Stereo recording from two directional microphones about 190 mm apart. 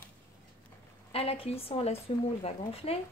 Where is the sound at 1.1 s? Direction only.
30° left (ahead or behind).